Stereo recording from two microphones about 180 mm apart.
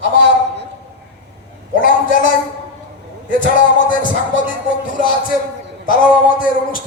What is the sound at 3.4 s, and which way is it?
Speech, 50° left (ahead or behind).